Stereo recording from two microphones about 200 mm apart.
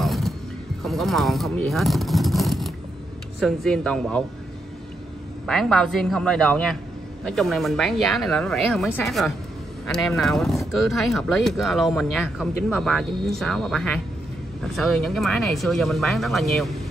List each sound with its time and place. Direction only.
0.0 s mechanisms: centre (ahead or behind)
0.8 s speech: centre (ahead or behind)
5.5 s speech: centre (ahead or behind)